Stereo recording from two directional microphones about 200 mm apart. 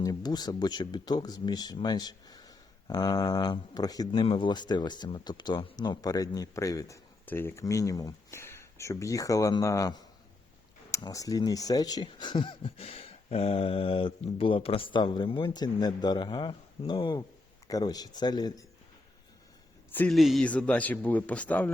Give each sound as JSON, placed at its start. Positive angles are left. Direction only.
{"t": 0.0, "sound": "speech", "side_deg": 20}
{"t": 19.9, "sound": "a man's voice", "side_deg": 5}